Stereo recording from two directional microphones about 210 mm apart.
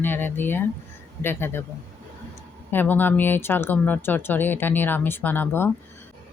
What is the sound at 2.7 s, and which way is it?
Speech, 10° left (ahead or behind).